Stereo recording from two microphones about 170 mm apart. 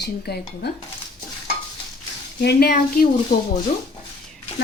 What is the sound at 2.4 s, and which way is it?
Speech, 75° left (ahead or behind).